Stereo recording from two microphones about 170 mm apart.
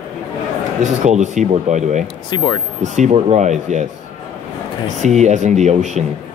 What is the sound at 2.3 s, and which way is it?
Speech, 25° left (ahead or behind).